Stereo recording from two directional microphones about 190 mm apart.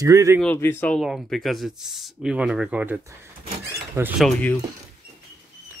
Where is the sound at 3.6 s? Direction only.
10° right (ahead or behind).